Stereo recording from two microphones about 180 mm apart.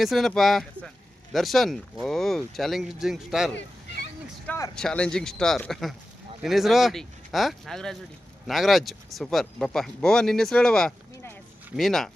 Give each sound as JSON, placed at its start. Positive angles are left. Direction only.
{"t": 0.0, "sound": "speech", "side_deg": 0}
{"t": 4.4, "sound": "a sound", "side_deg": 15}
{"t": 4.7, "sound": "speech", "side_deg": 5}